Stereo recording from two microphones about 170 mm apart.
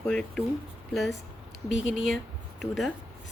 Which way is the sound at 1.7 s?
90° left.